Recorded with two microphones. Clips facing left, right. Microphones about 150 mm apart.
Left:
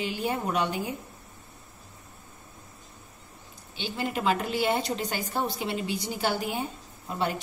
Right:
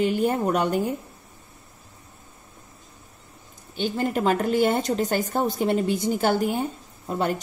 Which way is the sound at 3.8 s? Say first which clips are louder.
Right 6 dB; 45° right (ahead or behind).